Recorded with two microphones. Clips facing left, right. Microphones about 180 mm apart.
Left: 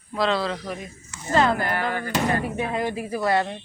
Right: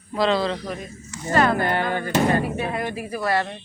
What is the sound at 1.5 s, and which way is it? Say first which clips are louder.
Speech: right 3 dB; 25° right (ahead or behind).